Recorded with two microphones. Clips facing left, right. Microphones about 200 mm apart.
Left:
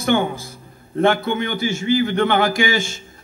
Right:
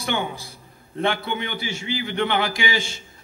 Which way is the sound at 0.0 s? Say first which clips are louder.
Left 8 dB; 50° left (ahead or behind).